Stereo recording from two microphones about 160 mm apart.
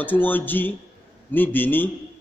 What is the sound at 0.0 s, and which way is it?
A man's voice, 10° left (ahead or behind).